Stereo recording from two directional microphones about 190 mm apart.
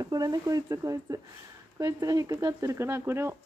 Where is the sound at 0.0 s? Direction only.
20° right (ahead or behind).